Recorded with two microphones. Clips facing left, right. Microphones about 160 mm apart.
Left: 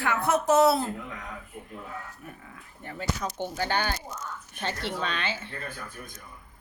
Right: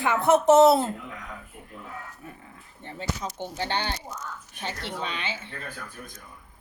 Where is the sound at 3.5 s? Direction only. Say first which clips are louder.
Even; 25° right (ahead or behind).